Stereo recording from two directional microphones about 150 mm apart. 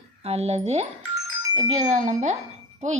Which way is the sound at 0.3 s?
45° right (ahead or behind).